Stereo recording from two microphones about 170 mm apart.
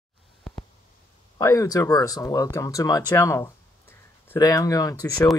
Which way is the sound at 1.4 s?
20° left (ahead or behind).